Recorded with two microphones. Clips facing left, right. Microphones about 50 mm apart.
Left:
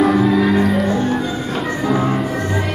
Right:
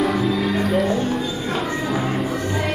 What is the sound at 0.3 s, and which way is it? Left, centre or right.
Music, centre.